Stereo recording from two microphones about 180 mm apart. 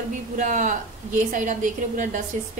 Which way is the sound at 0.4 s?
45° right (ahead or behind).